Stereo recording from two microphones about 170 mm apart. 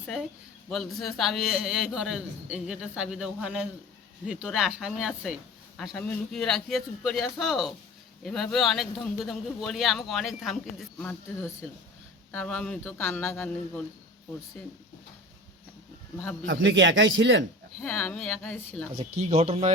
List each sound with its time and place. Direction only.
0.7 s a man's voice: centre (ahead or behind)
10.9 s speech: 10° left (ahead or behind)
16.5 s speech: 90° right
17.8 s speech: 10° left (ahead or behind)
18.9 s speech: 35° right (ahead or behind)